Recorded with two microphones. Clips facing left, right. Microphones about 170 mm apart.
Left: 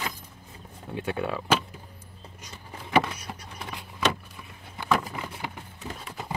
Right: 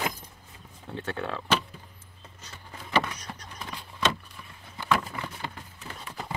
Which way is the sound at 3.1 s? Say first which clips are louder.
Left 2 dB; 10° left (ahead or behind).